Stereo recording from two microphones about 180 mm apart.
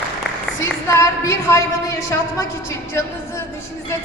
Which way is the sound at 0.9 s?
15° left (ahead or behind).